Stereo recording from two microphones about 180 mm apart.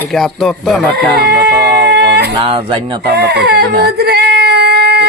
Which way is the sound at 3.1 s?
65° right (ahead or behind).